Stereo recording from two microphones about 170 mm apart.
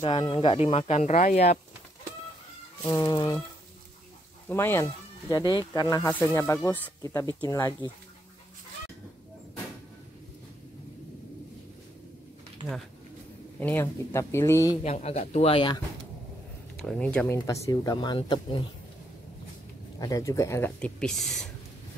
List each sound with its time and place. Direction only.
0.0 s speech: 25° left (ahead or behind); by 1.6 s 45° left (ahead or behind)
2.9 s speech: 20° left (ahead or behind)
4.5 s speech: 15° left (ahead or behind)
13.6 s speech: 10° left (ahead or behind)
14.8 s speech: 40° left (ahead or behind)
16.7 s speech: 5° left (ahead or behind)
17.5 s speech: 20° left (ahead or behind)
20.0 s speech: 20° left (ahead or behind); by 21.5 s centre (ahead or behind)